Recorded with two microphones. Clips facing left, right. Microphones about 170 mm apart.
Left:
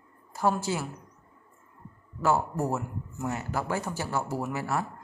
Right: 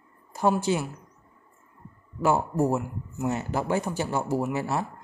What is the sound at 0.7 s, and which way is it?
Speech, 20° right (ahead or behind).